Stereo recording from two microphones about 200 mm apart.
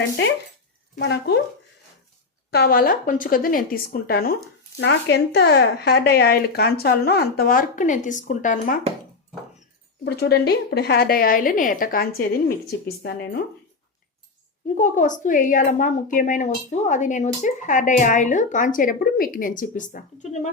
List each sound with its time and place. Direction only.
0.9 s speech: 60° left (ahead or behind)
2.5 s speech: 50° left (ahead or behind)
10.0 s speech: 55° left (ahead or behind)
14.8 s a woman's voice: 40° left (ahead or behind)